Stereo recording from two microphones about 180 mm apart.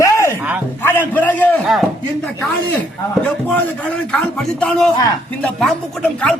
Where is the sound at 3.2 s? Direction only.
10° left (ahead or behind).